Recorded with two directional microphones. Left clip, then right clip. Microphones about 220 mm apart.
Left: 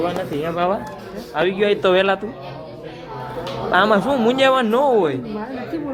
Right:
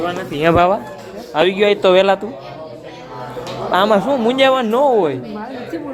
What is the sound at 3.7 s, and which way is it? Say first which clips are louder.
A man's voice: right 2 dB; 10° right (ahead or behind).